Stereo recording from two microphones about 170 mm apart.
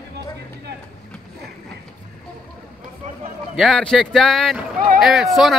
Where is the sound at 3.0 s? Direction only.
45° right (ahead or behind).